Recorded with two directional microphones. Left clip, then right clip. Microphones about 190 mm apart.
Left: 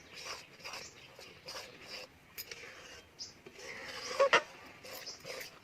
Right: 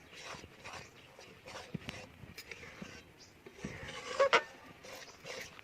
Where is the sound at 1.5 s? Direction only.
15° right (ahead or behind).